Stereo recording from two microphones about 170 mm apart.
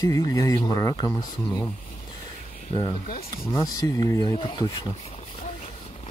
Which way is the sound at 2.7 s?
30° left (ahead or behind).